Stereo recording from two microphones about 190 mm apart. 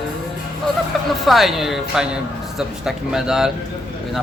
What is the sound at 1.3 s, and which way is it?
Speech, centre (ahead or behind).